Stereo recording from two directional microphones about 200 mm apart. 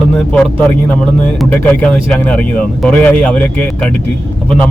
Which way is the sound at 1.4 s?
5° left (ahead or behind).